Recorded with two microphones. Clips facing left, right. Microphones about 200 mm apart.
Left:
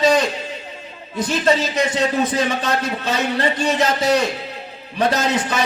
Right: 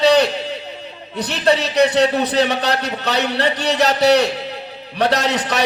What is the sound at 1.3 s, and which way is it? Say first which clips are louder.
A man's voice: right 1 dB; 70° right (ahead or behind).